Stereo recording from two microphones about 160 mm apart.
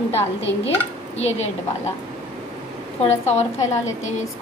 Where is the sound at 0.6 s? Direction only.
45° left (ahead or behind).